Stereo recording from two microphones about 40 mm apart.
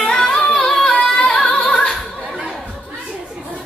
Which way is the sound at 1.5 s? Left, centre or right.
Left.